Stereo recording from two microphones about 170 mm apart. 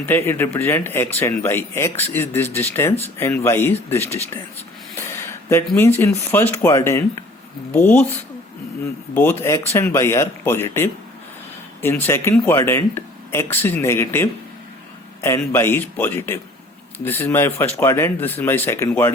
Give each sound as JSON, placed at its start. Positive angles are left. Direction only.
{"t": 0.0, "sound": "speech", "side_deg": 15}
{"t": 9.1, "sound": "speech", "side_deg": 10}